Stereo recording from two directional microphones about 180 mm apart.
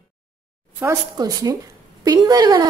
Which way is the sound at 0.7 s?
20° right (ahead or behind).